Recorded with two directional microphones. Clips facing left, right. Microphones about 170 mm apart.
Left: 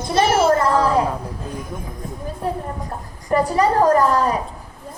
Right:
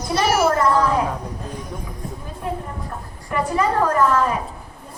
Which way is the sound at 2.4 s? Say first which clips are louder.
Left 2 dB; 35° left (ahead or behind).